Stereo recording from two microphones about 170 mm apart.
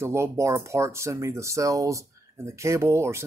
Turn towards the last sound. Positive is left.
turn(degrees=-15)  # may be behind; listen again after turning